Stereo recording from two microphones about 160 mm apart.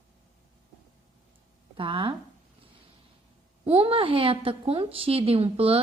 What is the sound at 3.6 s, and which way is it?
A woman's voice, 40° right (ahead or behind).